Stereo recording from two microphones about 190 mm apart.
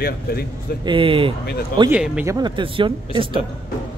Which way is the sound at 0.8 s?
30° right (ahead or behind).